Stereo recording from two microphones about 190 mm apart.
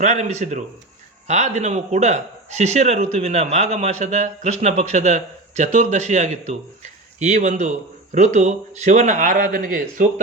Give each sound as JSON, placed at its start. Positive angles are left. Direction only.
{"t": 0.0, "sound": "a man's voice", "side_deg": -40}